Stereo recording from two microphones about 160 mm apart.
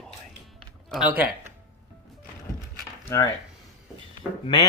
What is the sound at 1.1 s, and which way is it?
Speech, 10° right (ahead or behind).